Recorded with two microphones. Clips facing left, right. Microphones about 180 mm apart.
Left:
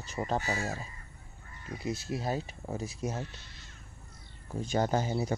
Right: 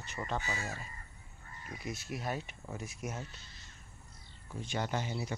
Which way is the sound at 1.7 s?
30° left (ahead or behind).